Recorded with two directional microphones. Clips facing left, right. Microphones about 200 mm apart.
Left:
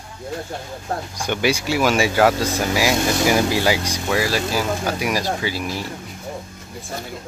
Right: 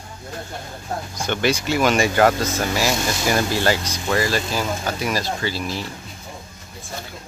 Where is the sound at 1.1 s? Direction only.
10° left (ahead or behind).